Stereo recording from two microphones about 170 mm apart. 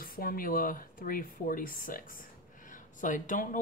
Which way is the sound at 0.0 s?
60° left (ahead or behind).